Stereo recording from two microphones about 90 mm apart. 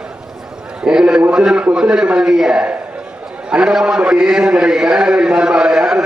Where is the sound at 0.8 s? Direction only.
10° right (ahead or behind).